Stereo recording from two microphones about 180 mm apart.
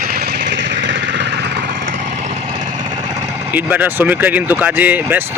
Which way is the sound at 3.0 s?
20° right (ahead or behind).